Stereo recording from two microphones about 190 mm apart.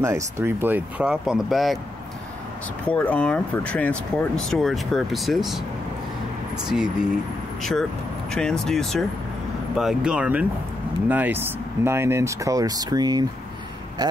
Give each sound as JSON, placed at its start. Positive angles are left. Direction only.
{"t": 0.0, "sound": "speech", "side_deg": -15}
{"t": 2.9, "sound": "speech", "side_deg": 5}
{"t": 8.3, "sound": "speech", "side_deg": 5}